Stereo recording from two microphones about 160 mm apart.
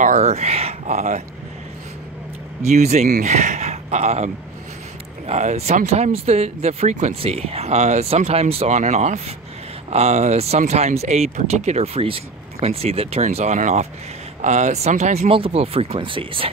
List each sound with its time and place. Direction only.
0.0 s speech: 45° right (ahead or behind)
2.6 s speech: 45° right (ahead or behind)